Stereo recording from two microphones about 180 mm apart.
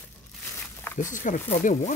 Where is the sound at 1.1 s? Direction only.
45° left (ahead or behind).